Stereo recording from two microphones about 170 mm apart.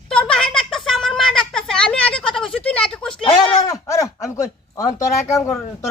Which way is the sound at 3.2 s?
30° left (ahead or behind).